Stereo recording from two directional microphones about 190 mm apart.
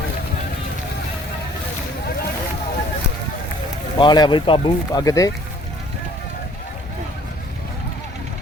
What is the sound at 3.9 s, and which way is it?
Speech, 20° left (ahead or behind).